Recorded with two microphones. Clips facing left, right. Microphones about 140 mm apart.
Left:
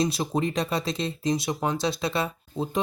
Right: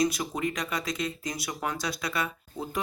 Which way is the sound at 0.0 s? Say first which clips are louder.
Left 2 dB; 30° left (ahead or behind).